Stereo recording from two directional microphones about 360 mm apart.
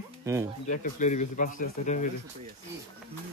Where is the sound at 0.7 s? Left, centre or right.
Centre.